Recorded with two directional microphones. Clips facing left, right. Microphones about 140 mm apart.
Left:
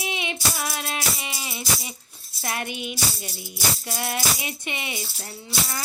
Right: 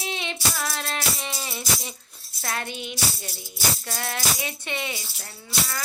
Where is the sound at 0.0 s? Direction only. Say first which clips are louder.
Left 1 dB; 15° left (ahead or behind).